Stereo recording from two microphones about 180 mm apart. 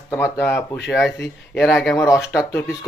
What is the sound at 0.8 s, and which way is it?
Speech, centre (ahead or behind).